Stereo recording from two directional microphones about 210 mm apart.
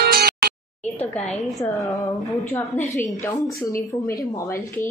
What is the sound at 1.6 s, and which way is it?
Speech, 15° left (ahead or behind).